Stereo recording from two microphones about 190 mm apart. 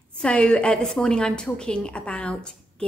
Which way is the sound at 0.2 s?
5° left (ahead or behind).